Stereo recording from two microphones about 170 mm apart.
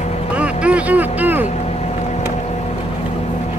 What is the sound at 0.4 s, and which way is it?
Vehicle, 5° right (ahead or behind).